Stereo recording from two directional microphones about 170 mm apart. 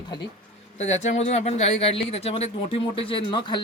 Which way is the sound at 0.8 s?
40° left (ahead or behind).